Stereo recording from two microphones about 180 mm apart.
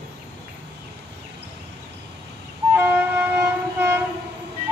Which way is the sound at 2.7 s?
10° right (ahead or behind).